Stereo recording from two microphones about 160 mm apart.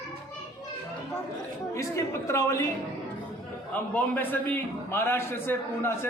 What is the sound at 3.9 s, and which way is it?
A man's voice, 10° left (ahead or behind).